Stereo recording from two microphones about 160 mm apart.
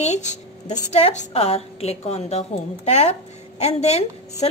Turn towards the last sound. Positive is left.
turn(degrees=40)  # may be behind; listen again after turning